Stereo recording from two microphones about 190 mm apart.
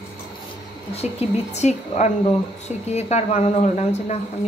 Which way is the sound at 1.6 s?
35° left (ahead or behind).